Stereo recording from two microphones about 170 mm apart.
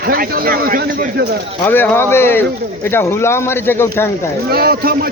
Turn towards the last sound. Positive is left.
turn(degrees=-60)  # may be behind; listen again after turning